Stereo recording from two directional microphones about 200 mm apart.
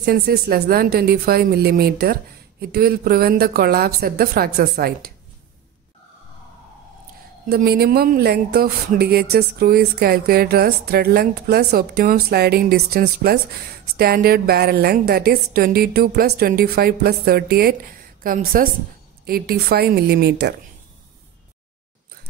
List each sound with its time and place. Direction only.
0.0 s speech: 50° right (ahead or behind)
7.4 s speech: 50° right (ahead or behind)